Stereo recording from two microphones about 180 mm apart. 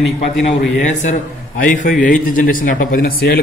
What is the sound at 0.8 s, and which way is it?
A man's voice, 45° left (ahead or behind).